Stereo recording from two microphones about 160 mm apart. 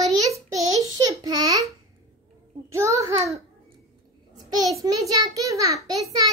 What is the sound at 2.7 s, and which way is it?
Speech, 20° right (ahead or behind).